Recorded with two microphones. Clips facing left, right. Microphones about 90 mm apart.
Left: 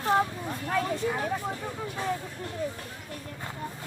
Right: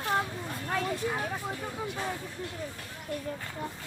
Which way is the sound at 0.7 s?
Centre (ahead or behind).